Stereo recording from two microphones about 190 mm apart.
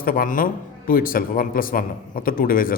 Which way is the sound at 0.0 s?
50° left (ahead or behind).